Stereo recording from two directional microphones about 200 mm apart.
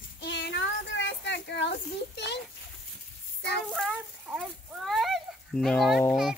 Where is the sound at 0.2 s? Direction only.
55° left (ahead or behind).